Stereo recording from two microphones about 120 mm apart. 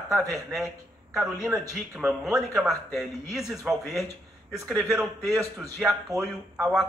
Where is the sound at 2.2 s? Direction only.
5° right (ahead or behind).